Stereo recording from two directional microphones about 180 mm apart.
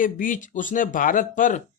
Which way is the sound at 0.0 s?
50° left (ahead or behind).